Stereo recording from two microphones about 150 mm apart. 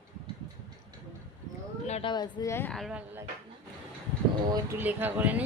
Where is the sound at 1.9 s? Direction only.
35° left (ahead or behind); by 2.7 s 15° left (ahead or behind).